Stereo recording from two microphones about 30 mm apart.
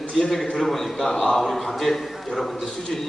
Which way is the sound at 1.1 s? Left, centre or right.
Left.